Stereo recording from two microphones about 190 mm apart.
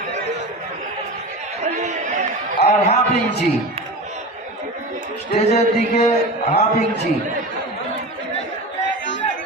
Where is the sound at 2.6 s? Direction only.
35° left (ahead or behind).